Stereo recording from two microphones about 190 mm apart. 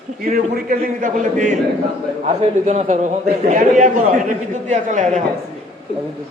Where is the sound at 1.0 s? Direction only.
45° right (ahead or behind).